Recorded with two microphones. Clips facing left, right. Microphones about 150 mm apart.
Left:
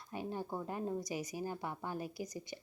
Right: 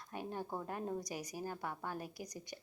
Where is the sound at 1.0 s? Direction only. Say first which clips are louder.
Left 4 dB; 45° right (ahead or behind).